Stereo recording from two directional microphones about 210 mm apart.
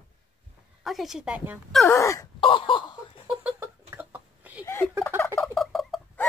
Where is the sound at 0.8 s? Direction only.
Centre (ahead or behind).